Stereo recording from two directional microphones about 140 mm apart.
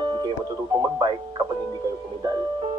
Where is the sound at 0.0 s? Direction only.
35° right (ahead or behind).